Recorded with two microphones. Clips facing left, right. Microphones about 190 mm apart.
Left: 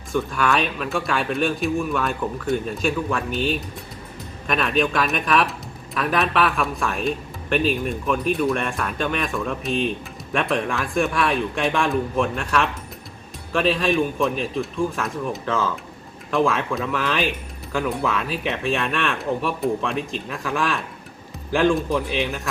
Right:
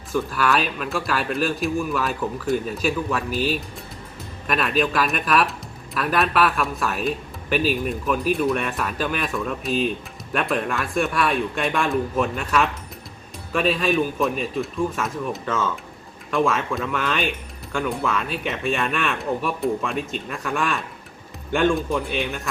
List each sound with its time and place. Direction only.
0.1 s speech: centre (ahead or behind)